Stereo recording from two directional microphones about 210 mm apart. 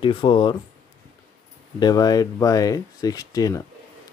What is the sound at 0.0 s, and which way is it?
Speech, 25° left (ahead or behind).